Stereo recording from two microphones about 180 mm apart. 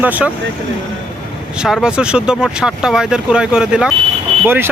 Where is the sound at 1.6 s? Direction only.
5° right (ahead or behind).